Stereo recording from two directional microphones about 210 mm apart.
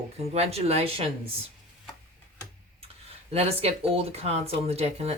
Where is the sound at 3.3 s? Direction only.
30° right (ahead or behind).